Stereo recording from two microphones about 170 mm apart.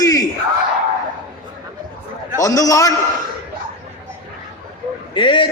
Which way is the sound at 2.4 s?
20° left (ahead or behind).